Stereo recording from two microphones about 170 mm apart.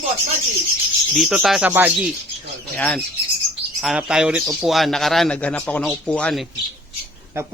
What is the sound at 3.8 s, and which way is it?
A man's voice, 5° right (ahead or behind).